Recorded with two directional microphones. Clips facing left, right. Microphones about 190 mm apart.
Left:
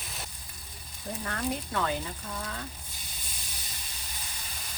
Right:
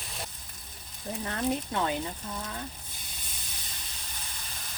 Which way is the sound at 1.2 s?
25° right (ahead or behind).